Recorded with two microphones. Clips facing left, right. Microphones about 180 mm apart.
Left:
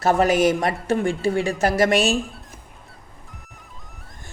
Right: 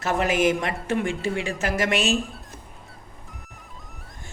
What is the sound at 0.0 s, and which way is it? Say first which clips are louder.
Speech: left 4 dB; 40° left (ahead or behind).